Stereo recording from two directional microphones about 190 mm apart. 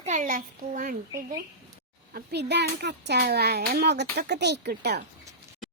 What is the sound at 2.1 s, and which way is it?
A child's voice, 60° right (ahead or behind).